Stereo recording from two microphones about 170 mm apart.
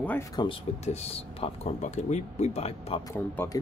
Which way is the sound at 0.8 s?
35° left (ahead or behind).